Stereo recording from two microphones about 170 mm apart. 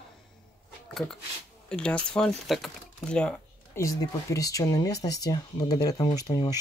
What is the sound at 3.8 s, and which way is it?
Speech, 20° left (ahead or behind).